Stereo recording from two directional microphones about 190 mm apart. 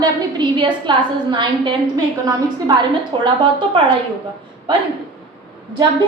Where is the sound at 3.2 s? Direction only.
25° right (ahead or behind).